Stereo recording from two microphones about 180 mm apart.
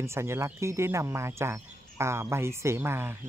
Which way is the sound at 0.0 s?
15° right (ahead or behind).